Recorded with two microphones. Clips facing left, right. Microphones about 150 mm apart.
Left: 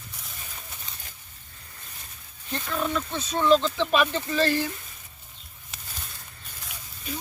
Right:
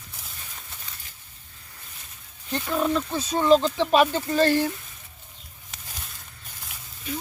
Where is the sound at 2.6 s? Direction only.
30° right (ahead or behind).